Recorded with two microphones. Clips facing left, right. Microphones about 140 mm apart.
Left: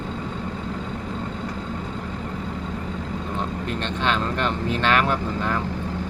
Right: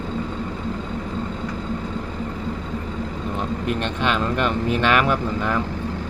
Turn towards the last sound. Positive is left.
turn(degrees=-10)  # may be behind; listen again after turning